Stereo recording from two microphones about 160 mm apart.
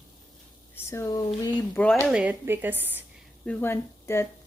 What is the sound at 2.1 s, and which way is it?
Speech, 10° right (ahead or behind).